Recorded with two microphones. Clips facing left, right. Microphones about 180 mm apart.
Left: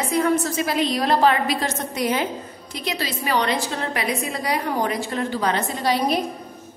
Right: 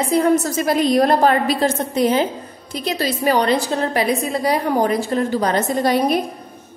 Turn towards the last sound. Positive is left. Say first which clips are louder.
# right 5 dB
turn(degrees=-50)  # may be behind; listen again after turning